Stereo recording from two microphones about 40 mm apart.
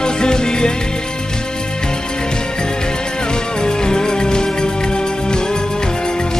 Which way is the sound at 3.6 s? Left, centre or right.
Centre.